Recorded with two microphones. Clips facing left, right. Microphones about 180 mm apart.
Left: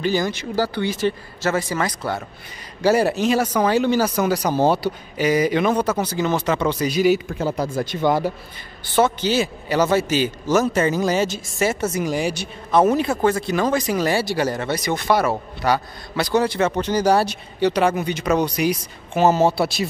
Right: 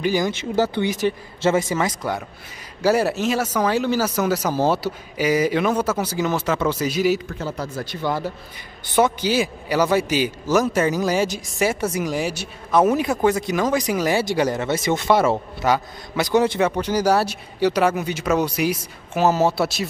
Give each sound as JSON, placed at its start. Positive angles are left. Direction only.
{"t": 0.0, "sound": "speech", "side_deg": -15}
{"t": 2.8, "sound": "speech", "side_deg": 0}
{"t": 7.5, "sound": "speech", "side_deg": 15}
{"t": 8.8, "sound": "speech", "side_deg": -15}